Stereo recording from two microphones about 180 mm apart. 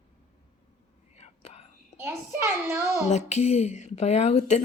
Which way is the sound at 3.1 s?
40° left (ahead or behind).